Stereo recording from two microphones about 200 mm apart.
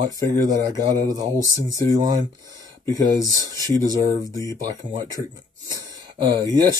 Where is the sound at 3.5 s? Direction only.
20° right (ahead or behind).